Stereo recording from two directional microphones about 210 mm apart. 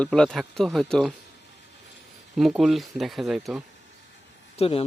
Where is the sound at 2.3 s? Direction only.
Centre (ahead or behind).